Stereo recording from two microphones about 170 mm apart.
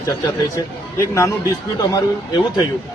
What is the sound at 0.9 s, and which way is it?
Speech, 15° left (ahead or behind).